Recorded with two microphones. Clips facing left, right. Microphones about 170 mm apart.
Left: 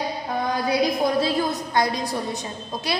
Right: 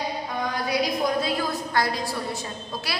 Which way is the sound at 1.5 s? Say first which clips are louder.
Left 2 dB; 20° left (ahead or behind).